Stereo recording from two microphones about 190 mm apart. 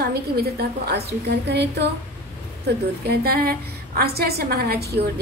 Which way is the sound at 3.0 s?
55° right (ahead or behind).